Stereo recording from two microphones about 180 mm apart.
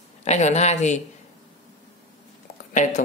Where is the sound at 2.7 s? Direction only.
45° left (ahead or behind).